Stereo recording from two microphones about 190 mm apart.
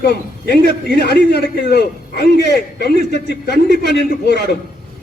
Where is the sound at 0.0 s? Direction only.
55° left (ahead or behind).